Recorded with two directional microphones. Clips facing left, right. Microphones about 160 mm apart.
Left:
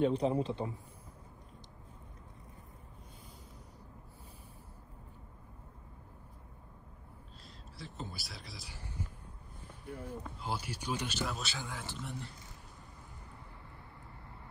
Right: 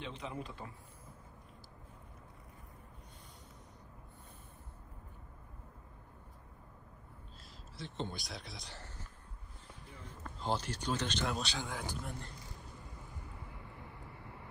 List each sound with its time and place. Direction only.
0.0 s speech: 35° left (ahead or behind)
7.4 s a sound: centre (ahead or behind)
10.0 s speech: 10° left (ahead or behind)